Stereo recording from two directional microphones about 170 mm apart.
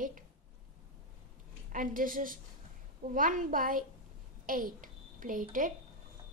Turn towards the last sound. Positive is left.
turn(degrees=-50)  # may be behind; listen again after turning